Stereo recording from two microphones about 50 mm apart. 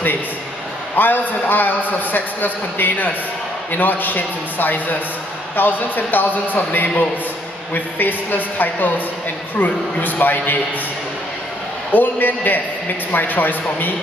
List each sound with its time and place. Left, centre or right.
0.9 s a man's voice: left
11.9 s a man's voice: left